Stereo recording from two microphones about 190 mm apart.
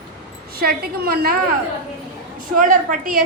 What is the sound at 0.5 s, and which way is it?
Speech, 50° right (ahead or behind).